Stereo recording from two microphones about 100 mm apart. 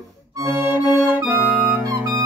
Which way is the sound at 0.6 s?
20° right (ahead or behind).